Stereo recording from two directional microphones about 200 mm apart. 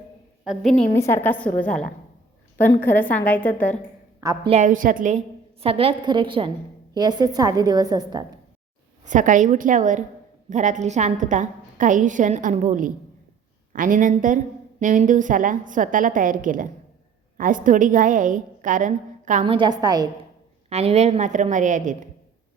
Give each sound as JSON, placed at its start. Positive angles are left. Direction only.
{"t": 0.4, "sound": "a woman's voice", "side_deg": 0}
{"t": 0.9, "sound": "a woman's voice", "side_deg": 15}
{"t": 4.4, "sound": "a woman's voice", "side_deg": -35}
{"t": 9.0, "sound": "a woman's voice", "side_deg": -40}
{"t": 19.5, "sound": "a woman's voice", "side_deg": -20}
{"t": 20.7, "sound": "a woman's voice", "side_deg": -30}